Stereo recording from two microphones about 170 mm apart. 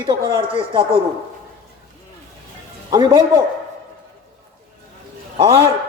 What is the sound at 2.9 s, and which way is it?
Speech, 25° right (ahead or behind).